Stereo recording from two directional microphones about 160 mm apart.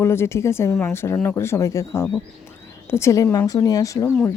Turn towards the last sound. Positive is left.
turn(degrees=20)  # may be behind; listen again after turning